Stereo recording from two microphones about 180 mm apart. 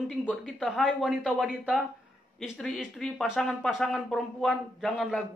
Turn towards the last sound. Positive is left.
turn(degrees=0)  # may be behind; listen again after turning